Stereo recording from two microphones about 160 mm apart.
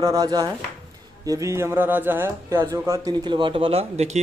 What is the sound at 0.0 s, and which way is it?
A man's voice, 20° right (ahead or behind).